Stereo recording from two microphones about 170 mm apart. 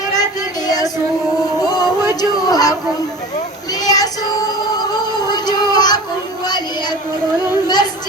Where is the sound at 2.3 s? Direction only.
20° left (ahead or behind).